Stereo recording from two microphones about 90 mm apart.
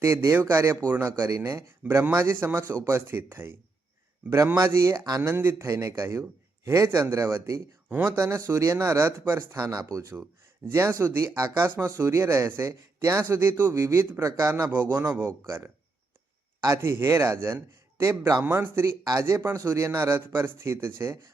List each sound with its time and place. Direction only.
0.0 s speech: 30° right (ahead or behind)
1.8 s speech: 20° right (ahead or behind); by 7.6 s 35° right (ahead or behind)
7.9 s speech: 20° right (ahead or behind)
8.1 s speech: 35° right (ahead or behind)
15.2 s speech: 25° right (ahead or behind)